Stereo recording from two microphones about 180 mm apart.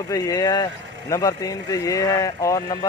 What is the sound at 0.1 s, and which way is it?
Speech, 20° left (ahead or behind).